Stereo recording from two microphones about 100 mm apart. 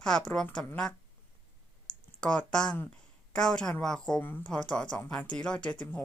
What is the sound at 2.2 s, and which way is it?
Speech, 10° left (ahead or behind).